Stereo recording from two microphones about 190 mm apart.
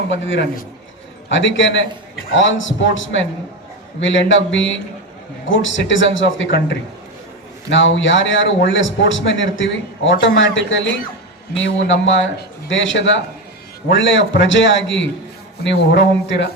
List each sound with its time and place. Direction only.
0.1 s a man's voice: 75° left (ahead or behind)
7.7 s a man's voice: 75° left (ahead or behind)
15.6 s a man's voice: 65° left (ahead or behind)